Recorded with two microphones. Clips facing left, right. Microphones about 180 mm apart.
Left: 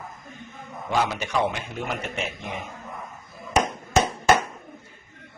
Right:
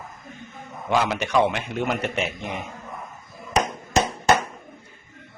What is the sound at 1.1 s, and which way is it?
Speech, 70° right (ahead or behind).